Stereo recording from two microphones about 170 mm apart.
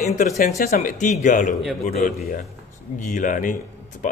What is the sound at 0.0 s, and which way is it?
Speech, 45° left (ahead or behind).